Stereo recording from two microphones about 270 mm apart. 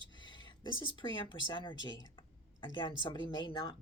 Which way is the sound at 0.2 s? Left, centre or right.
Centre.